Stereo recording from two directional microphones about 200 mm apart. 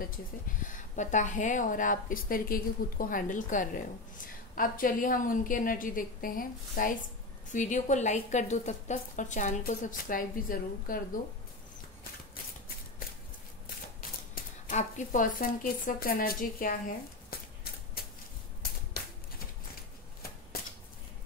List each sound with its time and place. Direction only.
0.7 s a woman's voice: 40° left (ahead or behind)
14.3 s speech: 40° left (ahead or behind)
17.3 s a sound: 50° left (ahead or behind)